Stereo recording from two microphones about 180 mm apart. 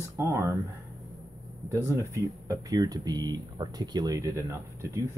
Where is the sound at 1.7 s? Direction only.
15° right (ahead or behind).